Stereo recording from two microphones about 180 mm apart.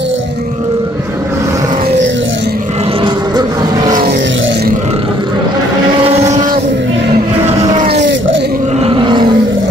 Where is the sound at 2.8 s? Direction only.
30° right (ahead or behind).